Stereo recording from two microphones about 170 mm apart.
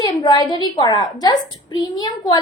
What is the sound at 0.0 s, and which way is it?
A woman's voice, 25° left (ahead or behind).